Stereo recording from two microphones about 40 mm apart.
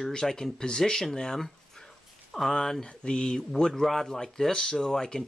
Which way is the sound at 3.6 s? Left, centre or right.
Centre.